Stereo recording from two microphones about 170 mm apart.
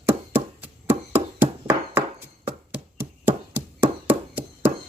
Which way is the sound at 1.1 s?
15° right (ahead or behind).